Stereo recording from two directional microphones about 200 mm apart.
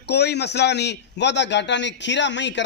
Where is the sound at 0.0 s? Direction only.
55° left (ahead or behind).